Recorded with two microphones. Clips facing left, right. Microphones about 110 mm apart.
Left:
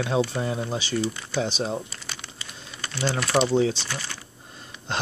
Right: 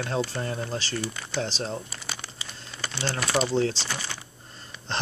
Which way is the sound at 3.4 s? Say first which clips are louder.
Left 3 dB; 5° left (ahead or behind).